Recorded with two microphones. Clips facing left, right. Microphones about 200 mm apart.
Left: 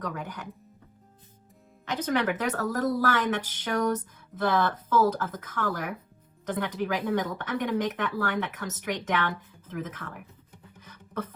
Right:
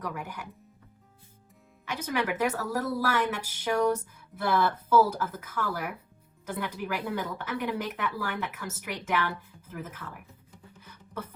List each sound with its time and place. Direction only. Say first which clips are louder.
0.0 s speech: left 1 dB; 10° right (ahead or behind)
1.8 s speech: left 4 dB; 10° right (ahead or behind)
10.8 s music: left 5 dB; 10° right (ahead or behind)